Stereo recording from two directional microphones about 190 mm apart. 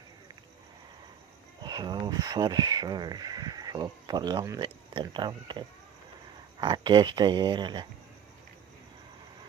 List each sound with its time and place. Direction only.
1.6 s speech: 20° right (ahead or behind)